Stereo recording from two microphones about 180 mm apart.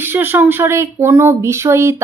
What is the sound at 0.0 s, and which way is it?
A woman's voice, 10° right (ahead or behind).